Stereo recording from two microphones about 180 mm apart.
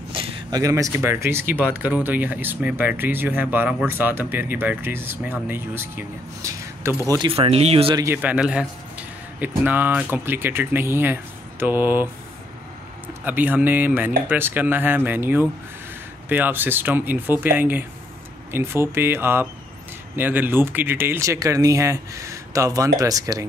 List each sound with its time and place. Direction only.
0.1 s a sound: 30° right (ahead or behind)
0.6 s speech: 20° right (ahead or behind); by 7.9 s 35° right (ahead or behind)
7.9 s speech: 15° right (ahead or behind)
13.2 s speech: 10° right (ahead or behind)